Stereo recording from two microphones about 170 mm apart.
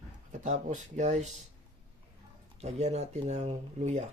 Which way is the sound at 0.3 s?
50° right (ahead or behind).